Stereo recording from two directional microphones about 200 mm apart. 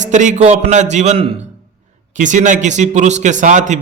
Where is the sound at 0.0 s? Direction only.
40° right (ahead or behind).